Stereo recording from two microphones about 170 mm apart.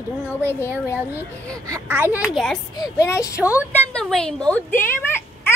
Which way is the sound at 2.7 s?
20° left (ahead or behind).